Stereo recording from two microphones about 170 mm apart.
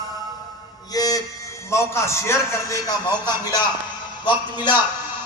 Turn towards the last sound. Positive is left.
turn(degrees=25)  # may be behind; listen again after turning